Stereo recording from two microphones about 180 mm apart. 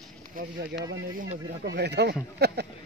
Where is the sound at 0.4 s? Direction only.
50° right (ahead or behind).